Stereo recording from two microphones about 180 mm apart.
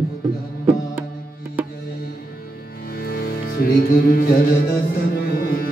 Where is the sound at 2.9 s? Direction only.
55° left (ahead or behind).